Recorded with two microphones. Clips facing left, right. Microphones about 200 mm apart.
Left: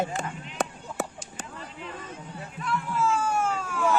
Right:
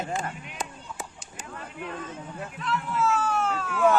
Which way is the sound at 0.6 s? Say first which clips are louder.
Left 7 dB; 70° left (ahead or behind).